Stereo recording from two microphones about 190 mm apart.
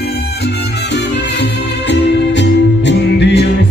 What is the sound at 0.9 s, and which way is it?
Music, 65° left (ahead or behind).